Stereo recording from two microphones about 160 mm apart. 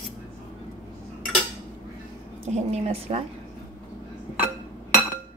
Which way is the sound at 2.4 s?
40° right (ahead or behind).